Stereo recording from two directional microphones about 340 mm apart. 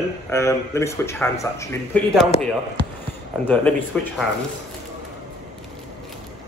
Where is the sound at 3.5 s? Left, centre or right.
Centre.